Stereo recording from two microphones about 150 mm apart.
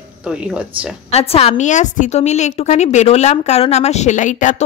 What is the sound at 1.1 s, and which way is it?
A woman's voice, 45° left (ahead or behind).